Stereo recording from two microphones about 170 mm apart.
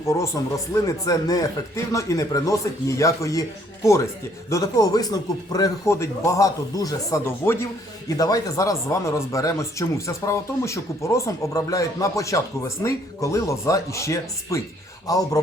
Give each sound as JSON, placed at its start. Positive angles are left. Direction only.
{"t": 0.1, "sound": "a man's voice", "side_deg": 20}
{"t": 4.4, "sound": "a man's voice", "side_deg": 20}